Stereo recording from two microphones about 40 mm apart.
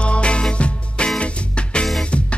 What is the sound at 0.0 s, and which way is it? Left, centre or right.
Music, left.